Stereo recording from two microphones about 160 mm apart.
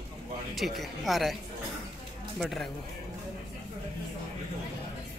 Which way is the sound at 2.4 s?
Centre (ahead or behind).